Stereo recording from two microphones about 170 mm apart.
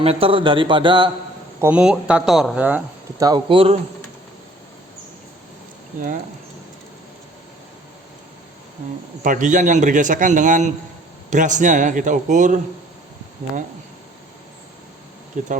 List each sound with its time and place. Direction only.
0.0 s a man's voice: 35° right (ahead or behind)
1.6 s speech: 5° right (ahead or behind)
3.2 s a man's voice: 25° right (ahead or behind)
9.2 s a man's voice: 50° right (ahead or behind)
15.3 s a man's voice: 50° right (ahead or behind)